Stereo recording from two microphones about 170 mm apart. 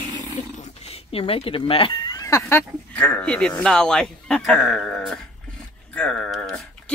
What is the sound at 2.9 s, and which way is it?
Speech, 5° left (ahead or behind).